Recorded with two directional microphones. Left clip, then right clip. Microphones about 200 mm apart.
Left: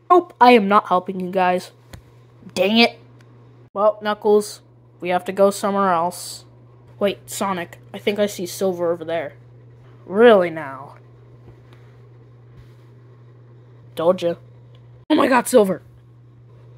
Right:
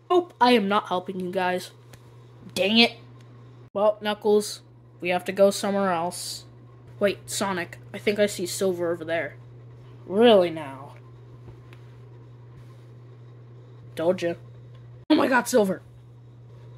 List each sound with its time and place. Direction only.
0.1 s speech: 15° left (ahead or behind)
15.2 s speech: 20° left (ahead or behind)